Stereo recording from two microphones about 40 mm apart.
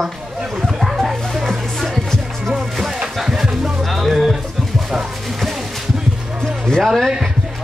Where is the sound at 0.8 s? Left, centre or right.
Centre.